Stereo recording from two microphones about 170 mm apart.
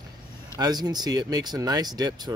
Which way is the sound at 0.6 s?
25° right (ahead or behind).